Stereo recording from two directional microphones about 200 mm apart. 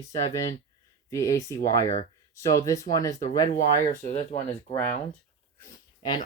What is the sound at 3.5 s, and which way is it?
Speech, 45° left (ahead or behind).